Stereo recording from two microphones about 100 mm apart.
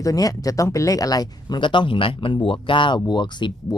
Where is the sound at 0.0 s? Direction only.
35° left (ahead or behind).